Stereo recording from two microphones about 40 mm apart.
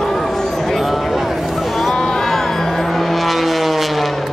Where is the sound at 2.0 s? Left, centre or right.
Centre.